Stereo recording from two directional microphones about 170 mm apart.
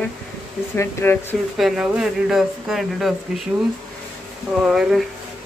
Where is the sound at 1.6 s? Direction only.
Centre (ahead or behind).